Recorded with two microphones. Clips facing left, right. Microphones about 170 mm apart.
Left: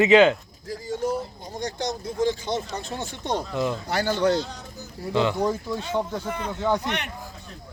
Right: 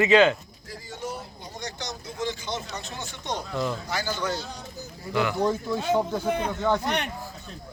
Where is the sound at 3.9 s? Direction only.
60° left (ahead or behind).